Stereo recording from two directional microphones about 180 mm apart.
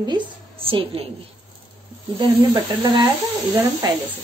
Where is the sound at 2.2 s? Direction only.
25° right (ahead or behind).